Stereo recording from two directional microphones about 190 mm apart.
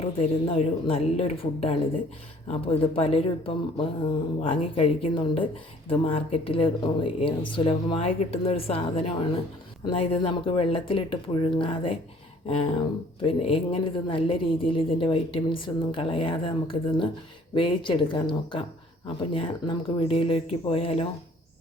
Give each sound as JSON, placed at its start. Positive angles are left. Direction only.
{"t": 0.0, "sound": "a woman's voice", "side_deg": 30}
{"t": 13.2, "sound": "a woman's voice", "side_deg": 30}